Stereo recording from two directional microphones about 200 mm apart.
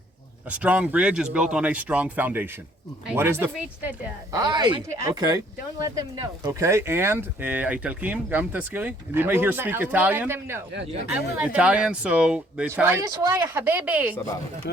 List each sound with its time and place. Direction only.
0.5 s speech: 5° right (ahead or behind)